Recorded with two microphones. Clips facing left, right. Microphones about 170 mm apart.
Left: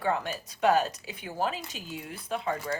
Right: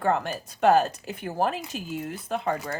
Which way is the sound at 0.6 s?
50° right (ahead or behind).